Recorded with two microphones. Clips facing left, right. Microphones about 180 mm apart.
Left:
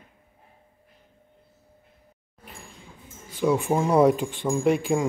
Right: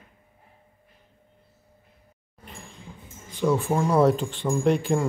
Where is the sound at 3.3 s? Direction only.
10° left (ahead or behind).